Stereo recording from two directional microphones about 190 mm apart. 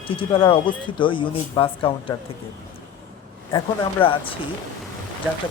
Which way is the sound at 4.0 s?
30° left (ahead or behind).